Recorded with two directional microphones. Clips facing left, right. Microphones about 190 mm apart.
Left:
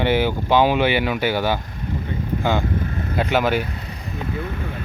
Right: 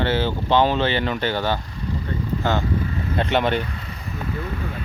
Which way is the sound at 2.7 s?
55° left (ahead or behind).